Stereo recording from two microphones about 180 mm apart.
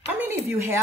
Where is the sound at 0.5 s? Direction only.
15° right (ahead or behind).